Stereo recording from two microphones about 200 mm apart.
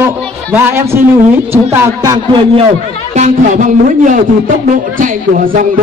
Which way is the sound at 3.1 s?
40° right (ahead or behind).